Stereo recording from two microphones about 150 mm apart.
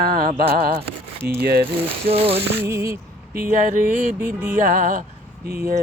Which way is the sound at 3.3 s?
85° right.